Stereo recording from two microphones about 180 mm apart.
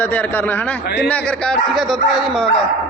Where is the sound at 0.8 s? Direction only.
60° left (ahead or behind).